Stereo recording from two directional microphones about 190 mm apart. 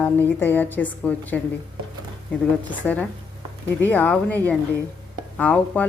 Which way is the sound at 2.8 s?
10° left (ahead or behind).